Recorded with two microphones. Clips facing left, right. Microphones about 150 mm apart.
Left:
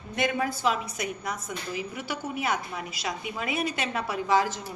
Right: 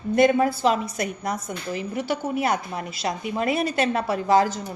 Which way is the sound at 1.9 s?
40° right (ahead or behind).